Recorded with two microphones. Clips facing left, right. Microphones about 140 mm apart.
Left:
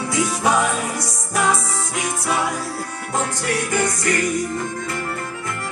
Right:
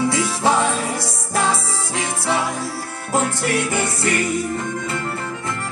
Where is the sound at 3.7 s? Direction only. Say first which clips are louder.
Left 1 dB; 25° right (ahead or behind).